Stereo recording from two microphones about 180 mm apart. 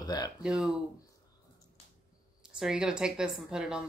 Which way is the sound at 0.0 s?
20° left (ahead or behind).